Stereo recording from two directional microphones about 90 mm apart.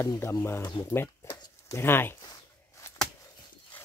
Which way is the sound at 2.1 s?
40° left (ahead or behind).